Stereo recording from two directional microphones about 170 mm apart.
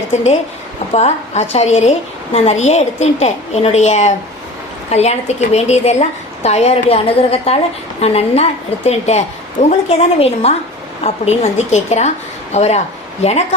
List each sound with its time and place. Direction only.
0.9 s a woman's voice: 40° left (ahead or behind)